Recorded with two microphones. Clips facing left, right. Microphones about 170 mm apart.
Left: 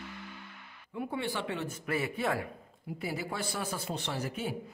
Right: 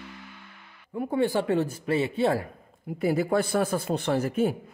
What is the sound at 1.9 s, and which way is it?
Speech, 25° right (ahead or behind).